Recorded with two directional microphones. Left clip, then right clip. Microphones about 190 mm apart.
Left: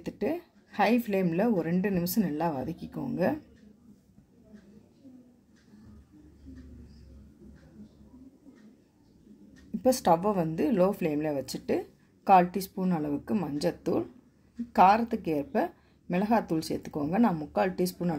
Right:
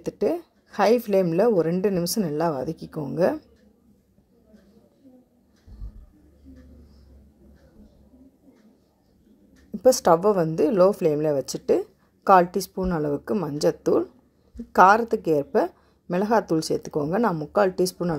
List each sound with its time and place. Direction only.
0.0 s a woman's voice: 35° right (ahead or behind)
9.8 s a woman's voice: 35° right (ahead or behind)